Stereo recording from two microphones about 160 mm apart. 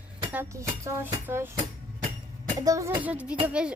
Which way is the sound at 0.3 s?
15° right (ahead or behind).